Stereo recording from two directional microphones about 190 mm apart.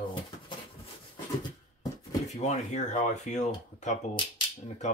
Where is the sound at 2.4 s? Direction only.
35° left (ahead or behind).